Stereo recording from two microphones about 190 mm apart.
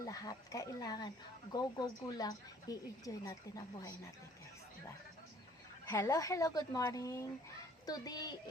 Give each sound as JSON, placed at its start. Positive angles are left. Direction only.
{"t": 0.0, "sound": "speech", "side_deg": 20}
{"t": 5.9, "sound": "speech", "side_deg": 15}